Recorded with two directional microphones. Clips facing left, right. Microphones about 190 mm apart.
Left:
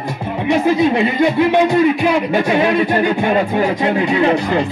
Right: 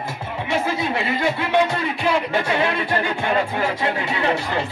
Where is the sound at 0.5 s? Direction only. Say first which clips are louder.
Left 9 dB; 20° left (ahead or behind).